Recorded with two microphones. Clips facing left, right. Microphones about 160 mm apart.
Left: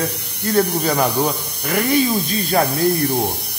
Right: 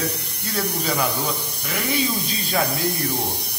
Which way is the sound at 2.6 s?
45° left (ahead or behind).